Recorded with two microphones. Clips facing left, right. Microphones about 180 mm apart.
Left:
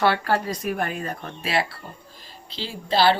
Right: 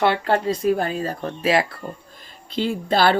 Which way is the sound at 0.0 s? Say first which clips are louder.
Right 2 dB; 20° right (ahead or behind).